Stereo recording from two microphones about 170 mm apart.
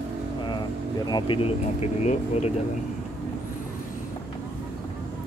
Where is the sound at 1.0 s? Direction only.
25° left (ahead or behind).